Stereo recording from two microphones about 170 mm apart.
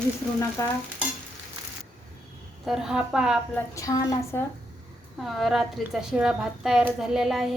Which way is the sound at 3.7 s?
20° left (ahead or behind).